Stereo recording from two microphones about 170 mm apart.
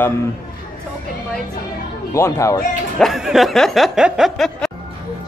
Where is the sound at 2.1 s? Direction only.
15° left (ahead or behind).